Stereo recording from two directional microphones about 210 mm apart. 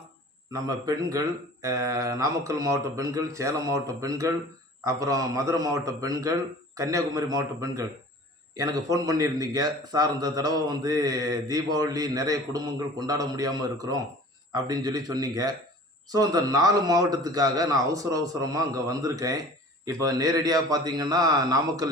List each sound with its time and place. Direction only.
0.5 s a man's voice: 15° right (ahead or behind)